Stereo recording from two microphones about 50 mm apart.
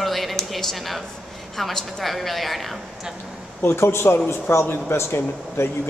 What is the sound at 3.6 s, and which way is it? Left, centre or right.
A man's voice, left.